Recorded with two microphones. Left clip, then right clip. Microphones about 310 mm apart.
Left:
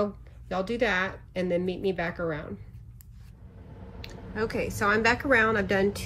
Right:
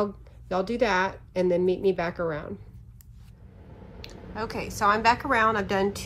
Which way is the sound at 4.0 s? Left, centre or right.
Centre.